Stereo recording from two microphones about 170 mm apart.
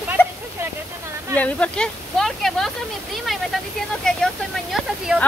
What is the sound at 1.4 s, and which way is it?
Speech, 5° left (ahead or behind).